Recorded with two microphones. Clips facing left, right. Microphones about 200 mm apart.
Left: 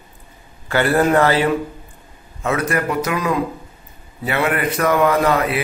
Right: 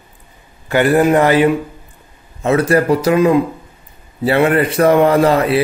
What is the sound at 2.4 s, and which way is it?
A man's voice, 30° right (ahead or behind).